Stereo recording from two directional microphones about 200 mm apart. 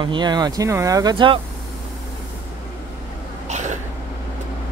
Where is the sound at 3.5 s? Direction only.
35° right (ahead or behind).